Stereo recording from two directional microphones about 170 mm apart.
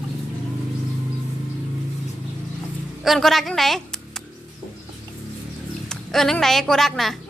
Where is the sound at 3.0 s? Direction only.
Centre (ahead or behind).